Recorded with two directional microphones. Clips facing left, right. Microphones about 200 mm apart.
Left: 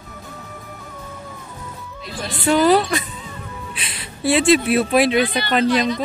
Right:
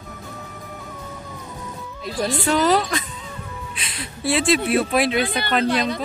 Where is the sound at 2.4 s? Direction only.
5° left (ahead or behind).